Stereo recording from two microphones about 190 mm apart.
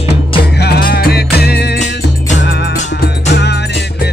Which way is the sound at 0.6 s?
55° left (ahead or behind).